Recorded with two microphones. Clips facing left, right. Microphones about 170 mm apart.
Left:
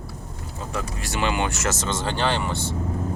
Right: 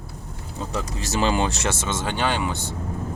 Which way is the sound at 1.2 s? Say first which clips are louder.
Right 3 dB; 35° right (ahead or behind).